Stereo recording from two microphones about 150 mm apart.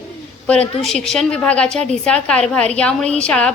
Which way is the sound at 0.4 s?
10° left (ahead or behind).